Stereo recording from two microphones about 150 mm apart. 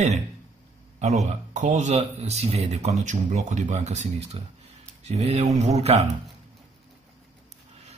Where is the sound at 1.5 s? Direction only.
55° right (ahead or behind).